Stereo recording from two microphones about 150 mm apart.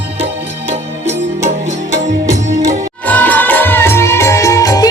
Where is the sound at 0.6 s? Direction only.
50° right (ahead or behind).